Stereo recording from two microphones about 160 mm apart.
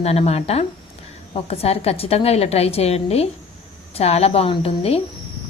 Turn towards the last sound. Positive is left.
turn(degrees=35)  # may be behind; listen again after turning